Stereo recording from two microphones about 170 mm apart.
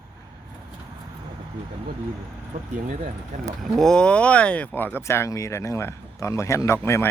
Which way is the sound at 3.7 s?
5° left (ahead or behind).